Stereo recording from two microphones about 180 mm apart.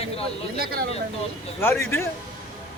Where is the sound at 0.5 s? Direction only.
55° right (ahead or behind).